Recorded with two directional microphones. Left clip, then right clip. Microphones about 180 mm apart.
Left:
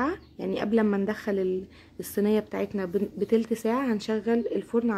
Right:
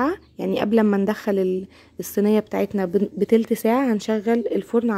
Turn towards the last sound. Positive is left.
turn(degrees=-30)  # may be behind; listen again after turning